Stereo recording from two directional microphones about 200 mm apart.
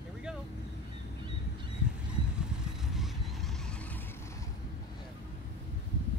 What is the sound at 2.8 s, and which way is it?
Vehicle, centre (ahead or behind).